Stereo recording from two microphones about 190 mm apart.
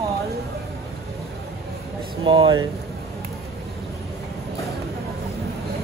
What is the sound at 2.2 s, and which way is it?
Speech, 25° right (ahead or behind).